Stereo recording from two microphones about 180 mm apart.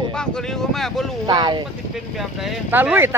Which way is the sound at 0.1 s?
5° left (ahead or behind).